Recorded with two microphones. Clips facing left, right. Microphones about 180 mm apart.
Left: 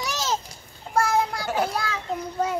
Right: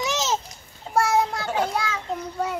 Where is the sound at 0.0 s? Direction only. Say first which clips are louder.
Right 3 dB; 20° right (ahead or behind).